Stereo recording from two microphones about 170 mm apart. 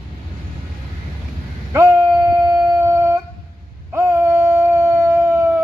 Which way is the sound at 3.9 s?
15° right (ahead or behind).